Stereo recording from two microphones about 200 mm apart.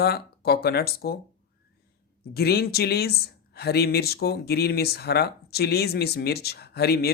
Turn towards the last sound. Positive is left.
turn(degrees=50)  # may be behind; listen again after turning